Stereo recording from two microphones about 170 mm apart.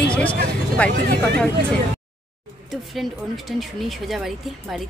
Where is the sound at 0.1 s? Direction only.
10° left (ahead or behind).